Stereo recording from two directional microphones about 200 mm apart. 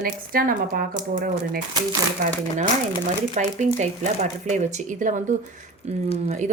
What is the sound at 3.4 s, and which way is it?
Speech, 35° right (ahead or behind).